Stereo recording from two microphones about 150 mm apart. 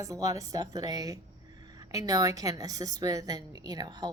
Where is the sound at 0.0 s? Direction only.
20° right (ahead or behind).